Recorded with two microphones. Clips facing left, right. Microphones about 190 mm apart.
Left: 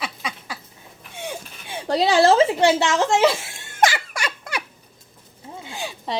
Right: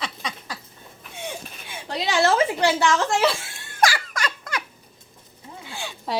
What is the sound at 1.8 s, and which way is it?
Speech, 35° left (ahead or behind).